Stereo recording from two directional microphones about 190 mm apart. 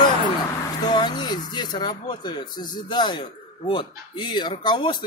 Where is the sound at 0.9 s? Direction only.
20° left (ahead or behind).